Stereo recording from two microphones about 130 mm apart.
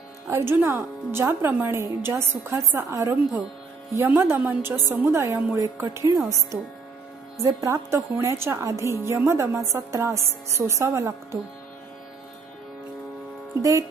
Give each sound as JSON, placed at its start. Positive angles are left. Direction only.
{"t": 0.3, "sound": "a woman's voice", "side_deg": -20}
{"t": 13.6, "sound": "a woman's voice", "side_deg": -25}